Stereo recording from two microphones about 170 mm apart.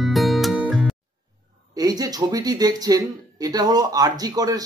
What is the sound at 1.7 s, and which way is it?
Speech, 20° right (ahead or behind).